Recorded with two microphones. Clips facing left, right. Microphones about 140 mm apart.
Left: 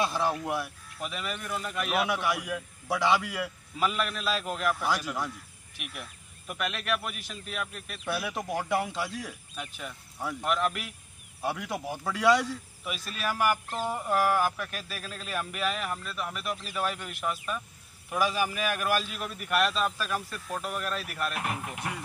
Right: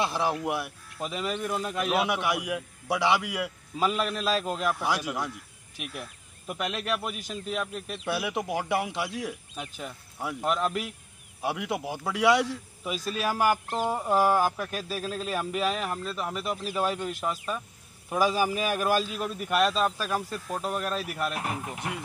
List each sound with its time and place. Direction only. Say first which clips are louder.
0.0 s a man's voice: right 1 dB; 15° right (ahead or behind)
1.0 s a man's voice: right 5 dB; 30° right (ahead or behind); by 3.5 s 10° right (ahead or behind)
3.8 s speech: right 2 dB; 30° right (ahead or behind)
8.1 s a man's voice: right 2 dB; 10° right (ahead or behind)
9.6 s speech: right 2 dB; 30° right (ahead or behind)
11.4 s a man's voice: right 2 dB; 15° right (ahead or behind)
13.1 s speech: right 3 dB; 30° right (ahead or behind)
21.0 s a man's voice: right 3 dB; 15° right (ahead or behind)
21.3 s speech: right 1 dB; 30° right (ahead or behind)